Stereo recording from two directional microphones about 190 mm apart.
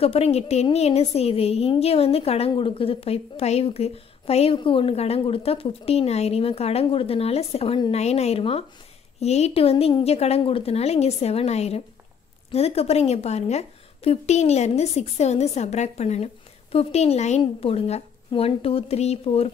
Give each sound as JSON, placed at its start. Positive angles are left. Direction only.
{"t": 0.0, "sound": "a woman's voice", "side_deg": 30}